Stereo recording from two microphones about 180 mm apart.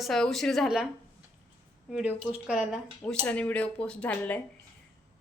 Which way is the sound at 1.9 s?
5° right (ahead or behind).